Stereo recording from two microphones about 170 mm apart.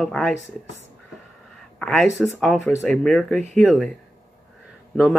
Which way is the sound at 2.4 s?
Centre (ahead or behind).